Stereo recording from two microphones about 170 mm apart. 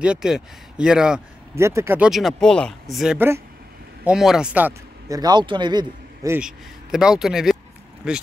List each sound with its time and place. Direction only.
0.0 s speech: 5° right (ahead or behind)
1.5 s speech: 15° right (ahead or behind)
2.0 s speech: centre (ahead or behind)
3.2 s speech: 15° right (ahead or behind)
4.0 s speech: 5° right (ahead or behind); by 6.3 s 25° right (ahead or behind)
6.3 s speech: 5° right (ahead or behind)